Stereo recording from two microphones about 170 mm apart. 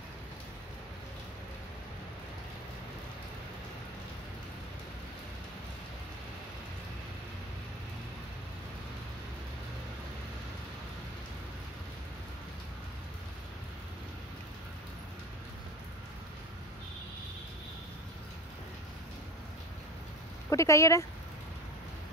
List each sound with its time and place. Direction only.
20.4 s speech: 15° left (ahead or behind)